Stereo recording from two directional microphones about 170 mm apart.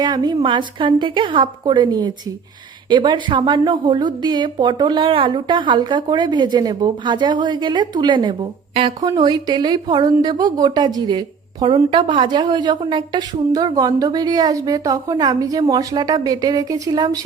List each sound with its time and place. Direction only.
0.0 s a woman's voice: 25° right (ahead or behind)